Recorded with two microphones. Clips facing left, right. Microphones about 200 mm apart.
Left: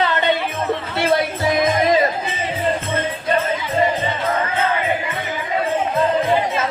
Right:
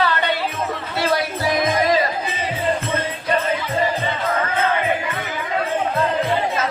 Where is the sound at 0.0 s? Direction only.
20° left (ahead or behind).